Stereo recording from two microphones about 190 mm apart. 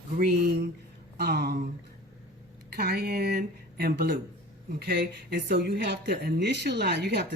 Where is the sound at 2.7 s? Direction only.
55° right (ahead or behind).